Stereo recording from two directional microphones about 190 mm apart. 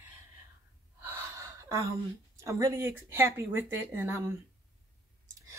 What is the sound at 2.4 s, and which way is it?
A woman's voice, 15° right (ahead or behind).